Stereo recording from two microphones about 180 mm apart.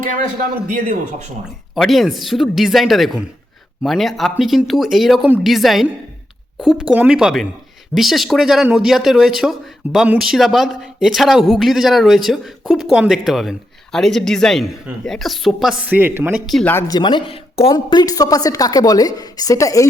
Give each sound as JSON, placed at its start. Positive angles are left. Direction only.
{"t": 1.7, "sound": "speech", "side_deg": 0}
{"t": 16.5, "sound": "speech", "side_deg": 0}
{"t": 16.7, "sound": "a woman's voice", "side_deg": 25}